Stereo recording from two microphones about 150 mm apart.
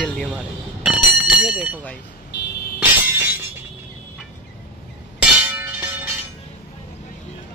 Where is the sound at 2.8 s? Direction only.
15° right (ahead or behind).